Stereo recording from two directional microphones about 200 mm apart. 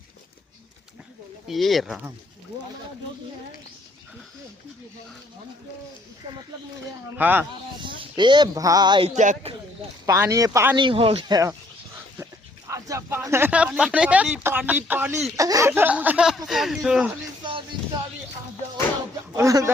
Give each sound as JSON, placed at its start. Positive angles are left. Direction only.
{"t": 1.5, "sound": "speech", "side_deg": 0}
{"t": 7.2, "sound": "speech", "side_deg": -10}
{"t": 7.8, "sound": "speech", "side_deg": -25}
{"t": 10.1, "sound": "speech", "side_deg": -15}
{"t": 10.8, "sound": "speech", "side_deg": -25}
{"t": 19.3, "sound": "speech", "side_deg": -15}